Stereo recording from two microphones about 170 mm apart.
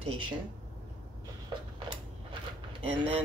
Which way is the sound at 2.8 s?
35° right (ahead or behind).